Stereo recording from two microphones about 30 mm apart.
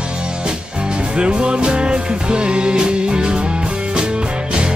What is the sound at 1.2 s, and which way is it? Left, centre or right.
Music, right.